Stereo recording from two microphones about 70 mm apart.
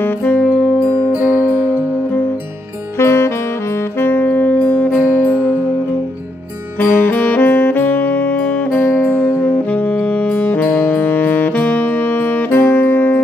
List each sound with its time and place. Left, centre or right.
0.0 s music: left
1.1 s music: right
3.0 s saxophone: left
4.0 s music: left
4.9 s music: centre
6.8 s music: left
8.9 s music: right
9.4 s saxophone: left